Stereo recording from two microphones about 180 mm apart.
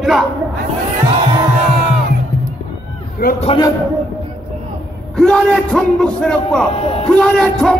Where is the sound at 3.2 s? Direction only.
55° left (ahead or behind).